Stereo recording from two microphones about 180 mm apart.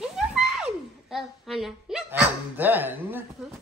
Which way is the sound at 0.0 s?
5° right (ahead or behind).